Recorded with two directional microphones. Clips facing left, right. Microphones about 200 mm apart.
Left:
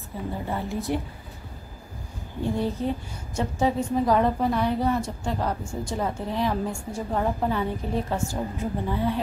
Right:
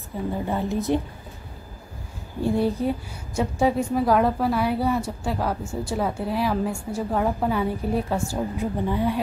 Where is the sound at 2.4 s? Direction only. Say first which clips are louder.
Right 4 dB; 10° right (ahead or behind).